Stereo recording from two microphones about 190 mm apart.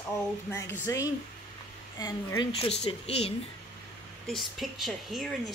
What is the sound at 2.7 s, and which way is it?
Speech, 30° left (ahead or behind).